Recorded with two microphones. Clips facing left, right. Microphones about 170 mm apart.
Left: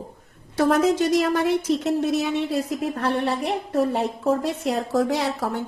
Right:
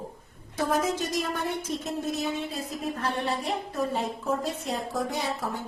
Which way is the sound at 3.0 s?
65° left (ahead or behind).